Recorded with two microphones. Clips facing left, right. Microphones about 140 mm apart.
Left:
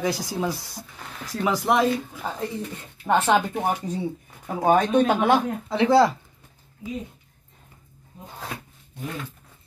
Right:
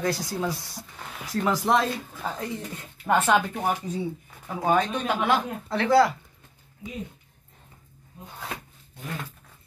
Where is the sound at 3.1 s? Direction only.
25° left (ahead or behind).